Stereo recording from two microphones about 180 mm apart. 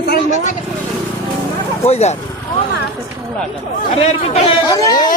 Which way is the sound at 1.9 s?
35° left (ahead or behind).